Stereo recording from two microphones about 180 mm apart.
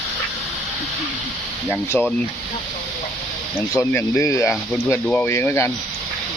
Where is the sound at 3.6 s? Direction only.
15° left (ahead or behind).